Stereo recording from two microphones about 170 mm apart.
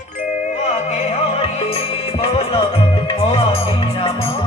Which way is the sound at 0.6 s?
40° left (ahead or behind).